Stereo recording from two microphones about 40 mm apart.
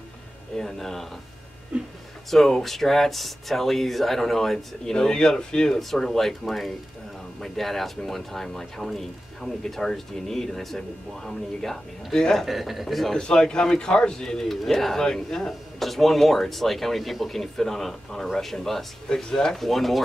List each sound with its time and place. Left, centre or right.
0.6 s speech: centre
1.7 s a sound: right
2.3 s speech: centre
5.8 s speech: centre
12.4 s speech: centre
13.2 s speech: centre